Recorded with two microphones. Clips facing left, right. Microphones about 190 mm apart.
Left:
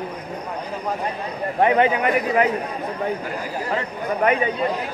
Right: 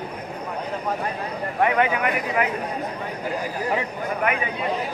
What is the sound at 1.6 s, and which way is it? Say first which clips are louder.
Speech: left 3 dB; 25° left (ahead or behind).